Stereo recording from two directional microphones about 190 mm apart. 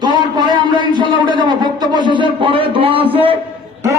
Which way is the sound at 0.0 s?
25° right (ahead or behind).